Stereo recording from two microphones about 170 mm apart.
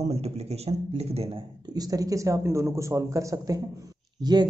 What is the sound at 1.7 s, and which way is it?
A man's voice, 20° right (ahead or behind).